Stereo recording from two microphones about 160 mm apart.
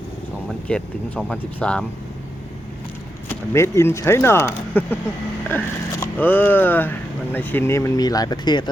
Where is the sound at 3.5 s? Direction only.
15° left (ahead or behind).